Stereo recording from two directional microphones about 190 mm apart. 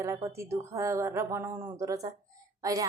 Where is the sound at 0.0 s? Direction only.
15° right (ahead or behind).